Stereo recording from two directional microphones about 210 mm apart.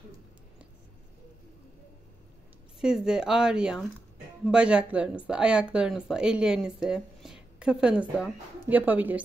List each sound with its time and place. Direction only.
2.8 s speech: 5° right (ahead or behind)